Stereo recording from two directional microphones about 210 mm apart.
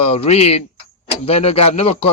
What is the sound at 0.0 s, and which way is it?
A man's voice, 30° left (ahead or behind).